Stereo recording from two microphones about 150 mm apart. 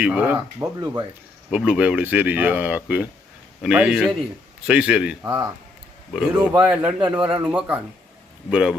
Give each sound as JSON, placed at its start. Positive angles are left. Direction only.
{"t": 0.0, "sound": "speech", "side_deg": -10}
{"t": 1.5, "sound": "a man's voice", "side_deg": -5}
{"t": 5.2, "sound": "speech", "side_deg": -25}
{"t": 6.1, "sound": "a man's voice", "side_deg": -5}